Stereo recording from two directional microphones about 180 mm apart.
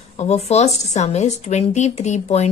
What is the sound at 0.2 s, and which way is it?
A woman's voice, 35° left (ahead or behind).